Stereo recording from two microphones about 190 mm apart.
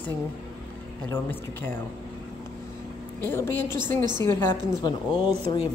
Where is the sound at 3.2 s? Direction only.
10° left (ahead or behind).